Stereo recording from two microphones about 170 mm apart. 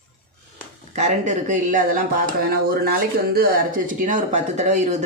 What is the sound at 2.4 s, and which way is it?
Speech, 65° right (ahead or behind).